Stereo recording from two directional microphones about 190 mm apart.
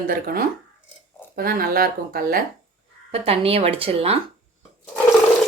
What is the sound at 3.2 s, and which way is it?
Speech, 30° right (ahead or behind).